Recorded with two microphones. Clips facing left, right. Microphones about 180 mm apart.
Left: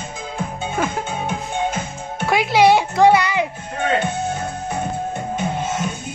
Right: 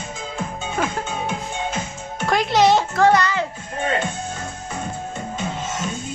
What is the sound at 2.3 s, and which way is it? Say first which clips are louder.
Music: left 2 dB; 10° left (ahead or behind).